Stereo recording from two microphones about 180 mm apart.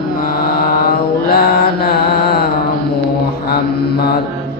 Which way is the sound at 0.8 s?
60° left (ahead or behind).